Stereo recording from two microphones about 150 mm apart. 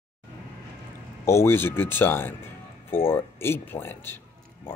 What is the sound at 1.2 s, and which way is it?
Speech, 15° left (ahead or behind).